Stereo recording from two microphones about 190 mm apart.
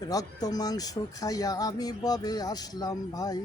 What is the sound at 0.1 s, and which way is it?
Speech, 20° left (ahead or behind).